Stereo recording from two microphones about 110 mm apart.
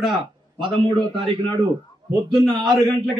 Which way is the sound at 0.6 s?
50° right (ahead or behind).